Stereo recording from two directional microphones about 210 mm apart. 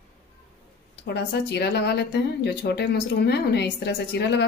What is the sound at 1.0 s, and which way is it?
Speech, 50° left (ahead or behind).